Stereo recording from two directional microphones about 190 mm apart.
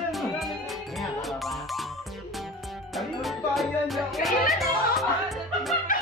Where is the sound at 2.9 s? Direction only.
Centre (ahead or behind).